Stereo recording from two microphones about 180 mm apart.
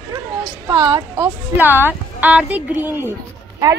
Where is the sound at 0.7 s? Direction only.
20° right (ahead or behind).